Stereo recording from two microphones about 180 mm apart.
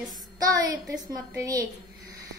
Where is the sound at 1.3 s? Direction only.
20° right (ahead or behind).